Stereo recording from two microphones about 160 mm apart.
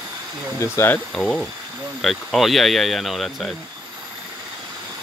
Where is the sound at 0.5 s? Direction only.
15° left (ahead or behind).